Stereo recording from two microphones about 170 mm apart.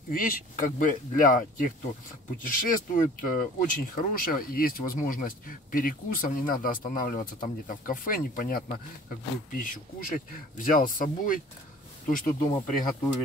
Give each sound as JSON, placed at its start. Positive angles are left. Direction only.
{"t": 0.1, "sound": "speech", "side_deg": 55}